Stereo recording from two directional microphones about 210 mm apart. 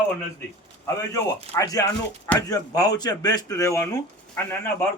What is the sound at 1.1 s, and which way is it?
Speech, 15° left (ahead or behind).